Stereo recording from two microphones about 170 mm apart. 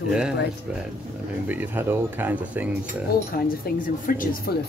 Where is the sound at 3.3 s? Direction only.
55° left (ahead or behind).